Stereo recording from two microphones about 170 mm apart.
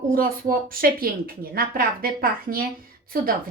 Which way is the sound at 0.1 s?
55° right (ahead or behind).